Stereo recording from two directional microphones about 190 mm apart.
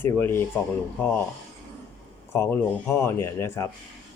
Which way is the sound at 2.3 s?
15° left (ahead or behind).